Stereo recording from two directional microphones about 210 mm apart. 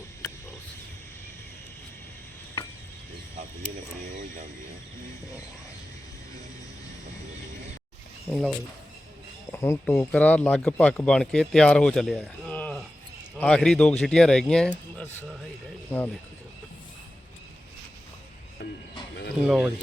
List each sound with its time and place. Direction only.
8.3 s speech: centre (ahead or behind)
9.5 s speech: 15° left (ahead or behind)
18.6 s a sound: 50° left (ahead or behind)
19.5 s speech: centre (ahead or behind)